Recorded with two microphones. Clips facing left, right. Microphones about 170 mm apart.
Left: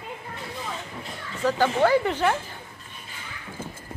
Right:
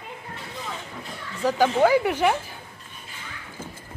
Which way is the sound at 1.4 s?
10° right (ahead or behind).